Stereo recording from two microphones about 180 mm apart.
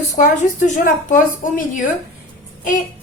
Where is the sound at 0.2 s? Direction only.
45° left (ahead or behind).